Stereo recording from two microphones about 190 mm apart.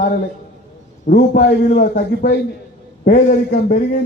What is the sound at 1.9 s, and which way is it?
Speech, 60° left (ahead or behind).